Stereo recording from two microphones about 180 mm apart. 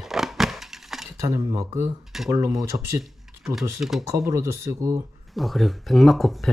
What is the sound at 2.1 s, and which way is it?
Speech, centre (ahead or behind).